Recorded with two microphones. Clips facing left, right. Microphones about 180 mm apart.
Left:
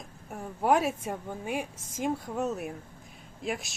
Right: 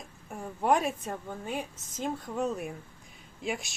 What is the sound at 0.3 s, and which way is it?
Speech, 5° left (ahead or behind).